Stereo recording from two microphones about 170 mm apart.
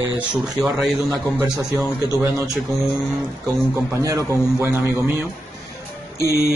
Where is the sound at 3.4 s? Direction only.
15° right (ahead or behind).